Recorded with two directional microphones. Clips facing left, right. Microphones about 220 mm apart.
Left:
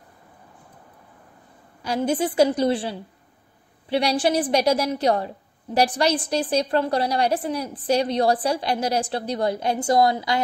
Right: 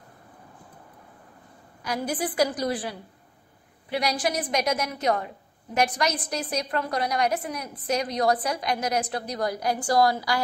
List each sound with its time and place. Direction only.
1.8 s a woman's voice: 25° left (ahead or behind)